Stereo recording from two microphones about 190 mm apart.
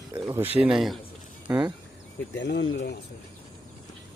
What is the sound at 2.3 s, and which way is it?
Speech, 70° left (ahead or behind).